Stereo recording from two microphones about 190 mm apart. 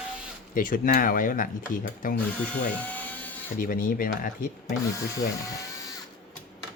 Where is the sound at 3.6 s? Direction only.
45° left (ahead or behind).